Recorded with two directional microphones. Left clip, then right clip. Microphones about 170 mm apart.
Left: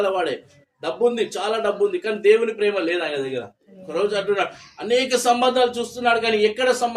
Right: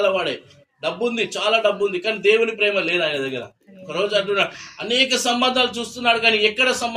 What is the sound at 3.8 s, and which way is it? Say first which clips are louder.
A man's voice: right 1 dB; 25° left (ahead or behind).